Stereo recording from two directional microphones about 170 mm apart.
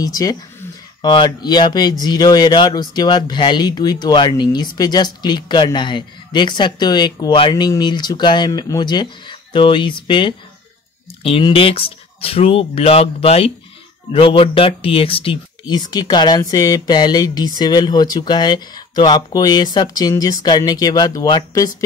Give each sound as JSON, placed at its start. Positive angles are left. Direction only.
{"t": 0.0, "sound": "speech", "side_deg": 20}